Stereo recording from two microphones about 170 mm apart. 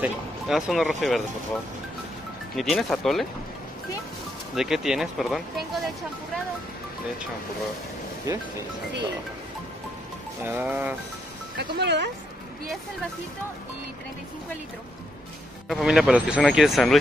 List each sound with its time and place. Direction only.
0.0 s speech: centre (ahead or behind)
2.5 s speech: centre (ahead or behind)
4.6 s speech: 5° right (ahead or behind)
8.3 s speech: 20° right (ahead or behind)
10.4 s speech: 10° right (ahead or behind)
11.5 s speech: 85° right
15.7 s speech: centre (ahead or behind)